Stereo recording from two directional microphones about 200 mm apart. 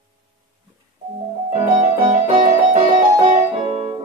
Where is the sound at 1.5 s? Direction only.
35° right (ahead or behind).